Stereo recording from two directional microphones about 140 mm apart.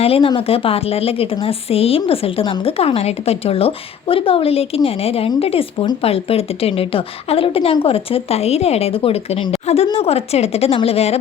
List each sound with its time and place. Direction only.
0.0 s a woman's voice: 40° left (ahead or behind)